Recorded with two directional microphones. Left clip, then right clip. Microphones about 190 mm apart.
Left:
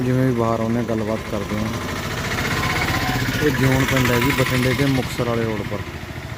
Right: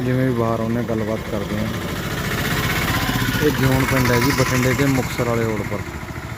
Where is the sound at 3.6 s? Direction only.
25° right (ahead or behind).